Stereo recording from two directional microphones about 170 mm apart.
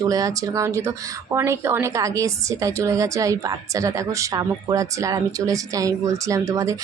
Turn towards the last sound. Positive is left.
turn(degrees=-20)  # may be behind; listen again after turning